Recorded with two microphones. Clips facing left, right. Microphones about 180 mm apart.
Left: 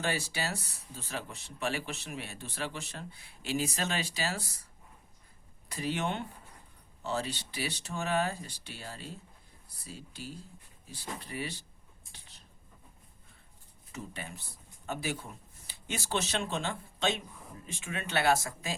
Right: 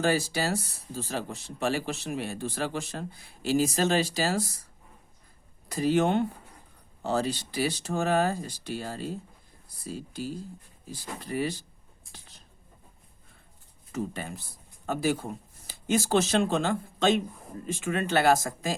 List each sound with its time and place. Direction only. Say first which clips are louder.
0.0 s speech: right 8 dB; 40° right (ahead or behind)
5.7 s speech: right 10 dB; 40° right (ahead or behind)
13.9 s speech: right 9 dB; 45° right (ahead or behind)